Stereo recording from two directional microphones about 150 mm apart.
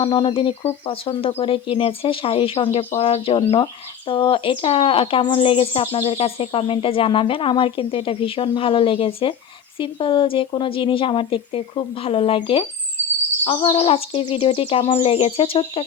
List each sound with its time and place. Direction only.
0.0 s speech: 30° left (ahead or behind)